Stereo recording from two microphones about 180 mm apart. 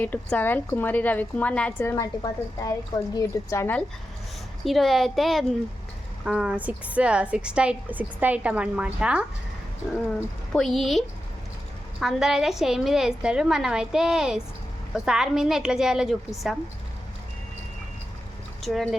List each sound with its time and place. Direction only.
0.0 s a woman's voice: 10° left (ahead or behind)
2.0 s a woman's voice: 20° left (ahead or behind)
4.6 s a woman's voice: centre (ahead or behind)
10.2 s a woman's voice: 5° left (ahead or behind)
18.6 s a woman's voice: centre (ahead or behind)